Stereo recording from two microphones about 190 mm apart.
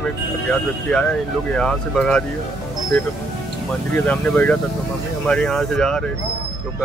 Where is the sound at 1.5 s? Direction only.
5° left (ahead or behind).